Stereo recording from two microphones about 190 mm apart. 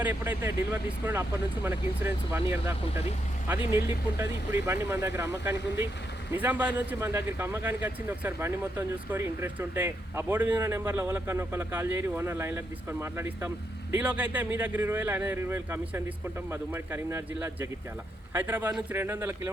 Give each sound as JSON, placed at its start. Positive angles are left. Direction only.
{"t": 0.0, "sound": "speech", "side_deg": -10}